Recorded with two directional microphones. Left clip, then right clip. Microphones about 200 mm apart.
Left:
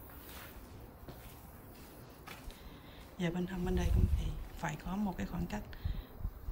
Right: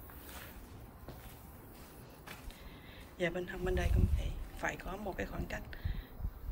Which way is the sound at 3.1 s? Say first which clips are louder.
Right 3 dB; 15° left (ahead or behind).